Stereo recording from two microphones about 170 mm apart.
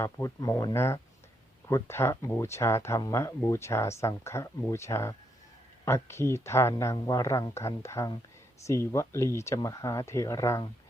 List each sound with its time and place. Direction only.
0.0 s speech: 20° left (ahead or behind)